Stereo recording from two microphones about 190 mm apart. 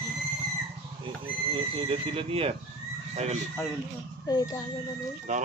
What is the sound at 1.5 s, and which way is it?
Speech, 30° right (ahead or behind).